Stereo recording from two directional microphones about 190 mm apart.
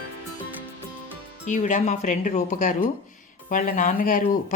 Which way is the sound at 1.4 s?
40° left (ahead or behind).